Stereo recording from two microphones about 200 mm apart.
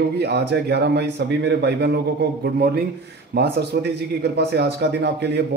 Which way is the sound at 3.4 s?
55° right (ahead or behind).